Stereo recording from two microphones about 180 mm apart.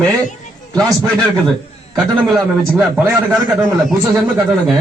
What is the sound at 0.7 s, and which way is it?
Speech, 20° right (ahead or behind).